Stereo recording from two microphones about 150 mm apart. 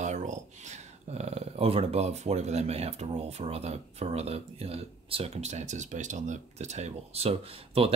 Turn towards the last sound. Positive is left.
turn(degrees=-40)  # may be behind; listen again after turning